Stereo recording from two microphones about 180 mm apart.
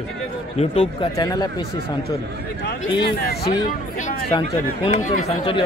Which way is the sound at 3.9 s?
45° left (ahead or behind).